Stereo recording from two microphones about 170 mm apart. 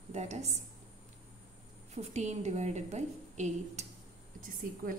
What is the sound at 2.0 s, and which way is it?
A woman's voice, 40° right (ahead or behind).